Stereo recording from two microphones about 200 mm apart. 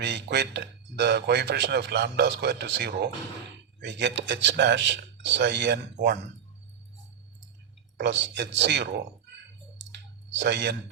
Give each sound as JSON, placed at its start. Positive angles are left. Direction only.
{"t": 0.0, "sound": "speech", "side_deg": -60}
{"t": 7.9, "sound": "speech", "side_deg": -65}
{"t": 9.7, "sound": "clicking", "side_deg": -65}